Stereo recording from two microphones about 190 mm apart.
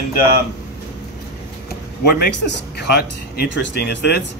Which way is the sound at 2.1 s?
60° left (ahead or behind).